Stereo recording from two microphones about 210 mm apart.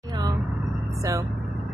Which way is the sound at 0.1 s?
20° right (ahead or behind).